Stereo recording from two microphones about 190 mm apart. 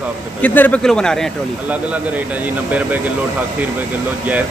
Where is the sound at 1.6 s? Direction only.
10° right (ahead or behind).